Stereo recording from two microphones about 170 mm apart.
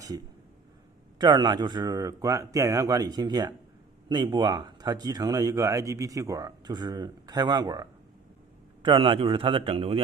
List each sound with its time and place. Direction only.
1.2 s a man's voice: 25° right (ahead or behind)